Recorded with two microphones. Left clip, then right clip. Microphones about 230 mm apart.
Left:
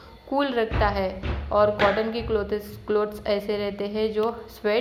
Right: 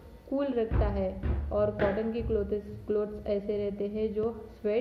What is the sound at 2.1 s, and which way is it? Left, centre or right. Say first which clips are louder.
A woman's voice: left 5 dB; centre.